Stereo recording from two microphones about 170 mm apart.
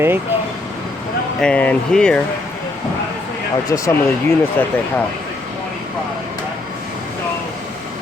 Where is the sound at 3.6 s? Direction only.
20° left (ahead or behind).